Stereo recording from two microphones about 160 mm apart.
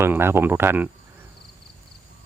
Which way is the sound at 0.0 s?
15° right (ahead or behind).